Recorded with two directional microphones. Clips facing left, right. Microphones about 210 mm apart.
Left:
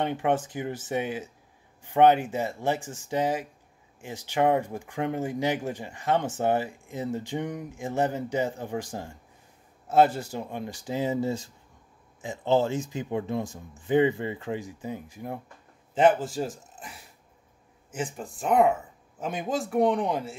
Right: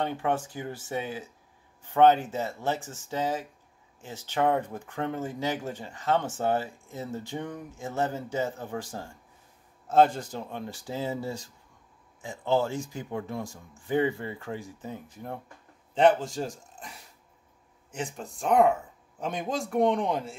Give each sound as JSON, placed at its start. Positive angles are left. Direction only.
{"t": 0.0, "sound": "speech", "side_deg": 20}
{"t": 17.9, "sound": "speech", "side_deg": 5}